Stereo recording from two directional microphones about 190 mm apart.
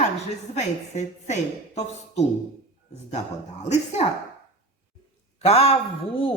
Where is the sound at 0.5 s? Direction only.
35° left (ahead or behind).